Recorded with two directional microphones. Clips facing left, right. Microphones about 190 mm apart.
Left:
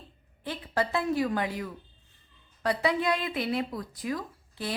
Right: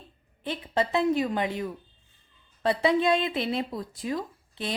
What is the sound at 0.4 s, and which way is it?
Speech, 20° right (ahead or behind).